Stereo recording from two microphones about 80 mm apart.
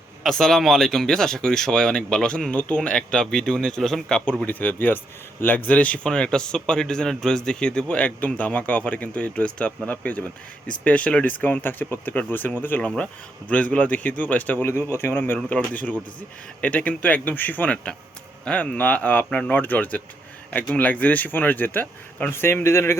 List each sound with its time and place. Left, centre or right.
0.2 s a man's voice: centre
4.4 s a man's voice: left
14.7 s speech: left